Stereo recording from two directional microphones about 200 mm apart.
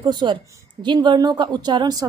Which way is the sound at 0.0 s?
20° right (ahead or behind).